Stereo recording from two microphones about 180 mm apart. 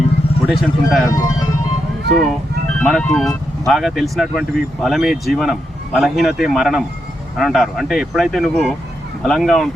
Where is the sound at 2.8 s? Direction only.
5° left (ahead or behind).